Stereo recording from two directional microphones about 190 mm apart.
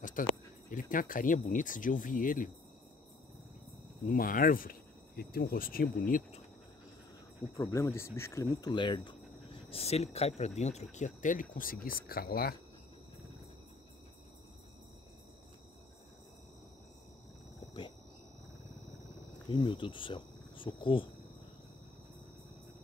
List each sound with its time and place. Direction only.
0.0 s speech: 45° left (ahead or behind)
4.1 s speech: 45° left (ahead or behind)
7.5 s speech: 20° left (ahead or behind); by 12.5 s 50° left (ahead or behind)
19.5 s speech: 25° left (ahead or behind)